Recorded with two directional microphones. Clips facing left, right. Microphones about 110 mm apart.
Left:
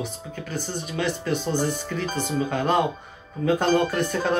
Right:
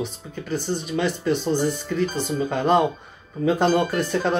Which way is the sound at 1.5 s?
50° left (ahead or behind).